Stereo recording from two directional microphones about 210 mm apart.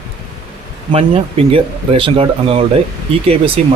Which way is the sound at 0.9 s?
25° right (ahead or behind).